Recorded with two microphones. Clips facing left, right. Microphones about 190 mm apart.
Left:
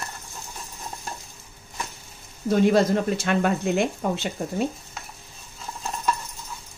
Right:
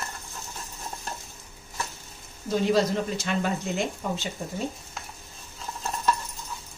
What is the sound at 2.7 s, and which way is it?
Speech, 55° left (ahead or behind).